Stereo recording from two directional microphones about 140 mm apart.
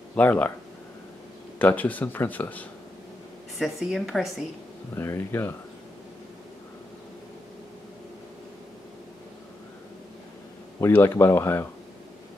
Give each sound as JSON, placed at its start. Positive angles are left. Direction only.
{"t": 0.1, "sound": "speech", "side_deg": 10}
{"t": 1.6, "sound": "speech", "side_deg": 10}
{"t": 3.5, "sound": "a woman's voice", "side_deg": 0}
{"t": 4.9, "sound": "speech", "side_deg": 15}
{"t": 10.8, "sound": "speech", "side_deg": 15}